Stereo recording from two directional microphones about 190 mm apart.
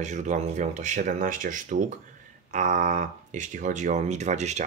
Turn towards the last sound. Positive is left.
turn(degrees=-35)  # may be behind; listen again after turning